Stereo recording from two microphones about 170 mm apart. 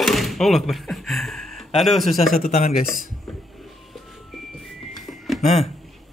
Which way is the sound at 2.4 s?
45° left (ahead or behind).